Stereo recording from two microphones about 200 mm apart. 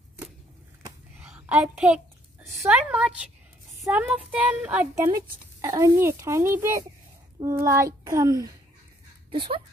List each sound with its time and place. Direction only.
1.2 s a sound: 5° right (ahead or behind)
2.6 s a woman's voice: 5° right (ahead or behind)
5.0 s a child's voice: 20° right (ahead or behind)